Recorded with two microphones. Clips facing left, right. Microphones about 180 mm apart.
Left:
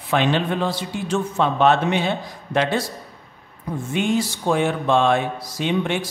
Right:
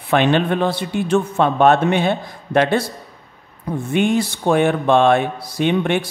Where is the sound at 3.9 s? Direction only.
60° right (ahead or behind).